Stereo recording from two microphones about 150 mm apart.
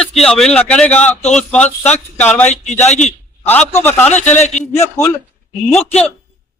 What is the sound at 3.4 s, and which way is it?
Speech, 15° left (ahead or behind).